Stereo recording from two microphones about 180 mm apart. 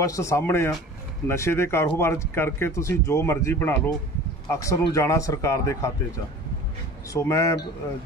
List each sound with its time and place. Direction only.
0.0 s speech: 15° left (ahead or behind)
7.1 s speech: 15° left (ahead or behind)